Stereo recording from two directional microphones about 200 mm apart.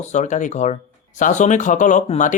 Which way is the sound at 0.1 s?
35° left (ahead or behind).